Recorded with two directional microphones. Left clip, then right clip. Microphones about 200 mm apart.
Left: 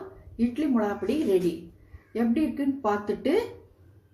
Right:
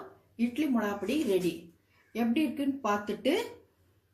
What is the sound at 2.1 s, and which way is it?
A woman's voice, 30° right (ahead or behind).